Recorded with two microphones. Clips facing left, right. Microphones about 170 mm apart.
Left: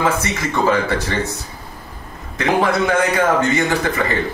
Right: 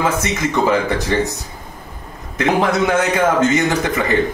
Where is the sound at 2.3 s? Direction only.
20° right (ahead or behind).